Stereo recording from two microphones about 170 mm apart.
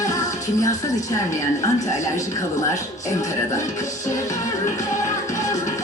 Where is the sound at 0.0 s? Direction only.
20° left (ahead or behind).